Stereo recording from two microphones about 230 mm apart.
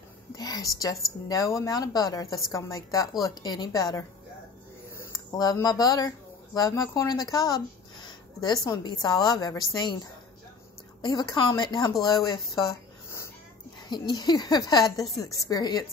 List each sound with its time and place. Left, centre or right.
0.4 s a woman's voice: centre
5.3 s speech: centre
11.0 s speech: centre
13.8 s a woman's voice: centre